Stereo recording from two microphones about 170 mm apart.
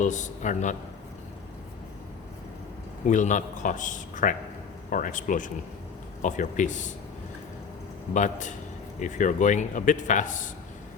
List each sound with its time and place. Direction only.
0.0 s a man's voice: 45° left (ahead or behind)
3.1 s a man's voice: 45° left (ahead or behind)
8.1 s a man's voice: 45° left (ahead or behind)